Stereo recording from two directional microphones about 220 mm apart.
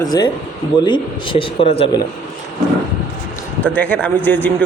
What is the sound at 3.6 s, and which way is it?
Speech, 5° left (ahead or behind).